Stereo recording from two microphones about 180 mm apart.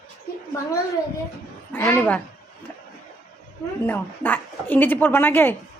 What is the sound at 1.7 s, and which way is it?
Speech, 10° left (ahead or behind).